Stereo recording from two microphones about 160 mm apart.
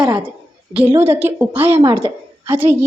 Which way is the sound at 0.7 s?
10° right (ahead or behind).